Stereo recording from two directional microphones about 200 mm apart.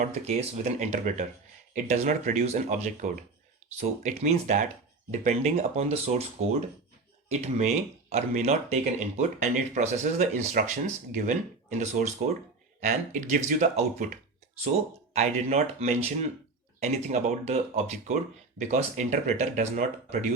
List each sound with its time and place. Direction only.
0.0 s speech: 35° right (ahead or behind)